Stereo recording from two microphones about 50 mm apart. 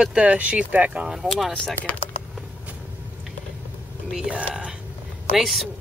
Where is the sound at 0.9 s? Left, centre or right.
Centre.